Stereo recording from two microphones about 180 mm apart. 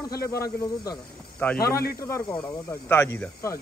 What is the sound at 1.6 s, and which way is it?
Speech, 60° left (ahead or behind).